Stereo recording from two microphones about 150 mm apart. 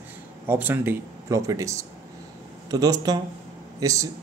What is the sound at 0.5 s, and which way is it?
Speech, 15° right (ahead or behind).